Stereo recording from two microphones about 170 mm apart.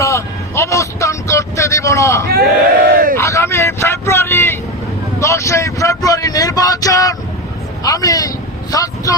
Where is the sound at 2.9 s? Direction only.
60° right (ahead or behind).